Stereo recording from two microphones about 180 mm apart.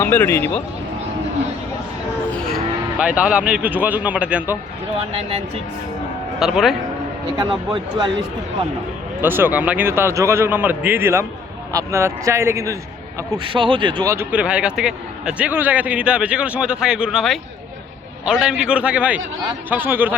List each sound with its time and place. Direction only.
0.0 s speech: 15° left (ahead or behind)
2.3 s speech: 5° left (ahead or behind)
6.4 s a man's voice: centre (ahead or behind)
7.3 s speech: 25° right (ahead or behind)
9.2 s speech: 10° right (ahead or behind)
13.4 s a man's voice: 30° right (ahead or behind); by 20.1 s 10° right (ahead or behind)